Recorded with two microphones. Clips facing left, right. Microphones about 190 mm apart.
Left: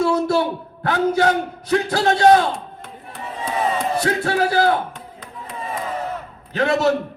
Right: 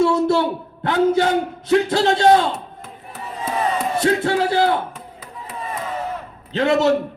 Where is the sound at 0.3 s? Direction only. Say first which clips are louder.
Right 1 dB; 25° right (ahead or behind).